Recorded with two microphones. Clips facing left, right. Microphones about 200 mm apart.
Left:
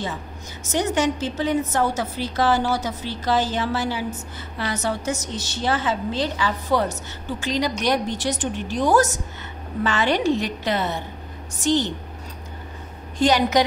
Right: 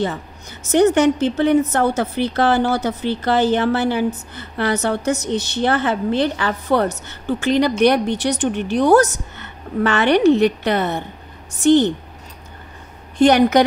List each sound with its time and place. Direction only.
0.7 s a woman's voice: 60° right (ahead or behind)
13.2 s a woman's voice: 60° right (ahead or behind)